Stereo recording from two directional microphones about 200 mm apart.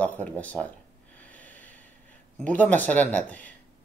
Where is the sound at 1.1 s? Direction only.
5° left (ahead or behind).